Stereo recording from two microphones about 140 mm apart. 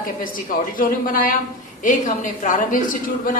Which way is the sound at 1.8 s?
65° left (ahead or behind).